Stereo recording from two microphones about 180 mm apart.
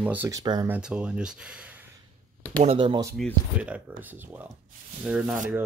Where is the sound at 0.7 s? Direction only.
5° right (ahead or behind).